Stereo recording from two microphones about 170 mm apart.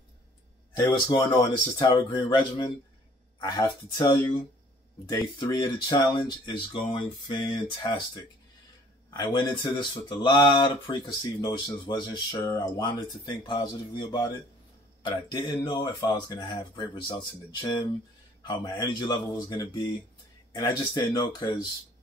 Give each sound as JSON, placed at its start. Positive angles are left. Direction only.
{"t": 0.7, "sound": "speech", "side_deg": 25}
{"t": 5.4, "sound": "speech", "side_deg": 25}